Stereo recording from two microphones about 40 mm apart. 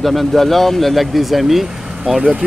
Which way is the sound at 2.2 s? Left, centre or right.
Right.